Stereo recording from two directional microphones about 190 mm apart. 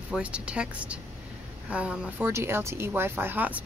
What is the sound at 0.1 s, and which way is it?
Speech, 5° right (ahead or behind).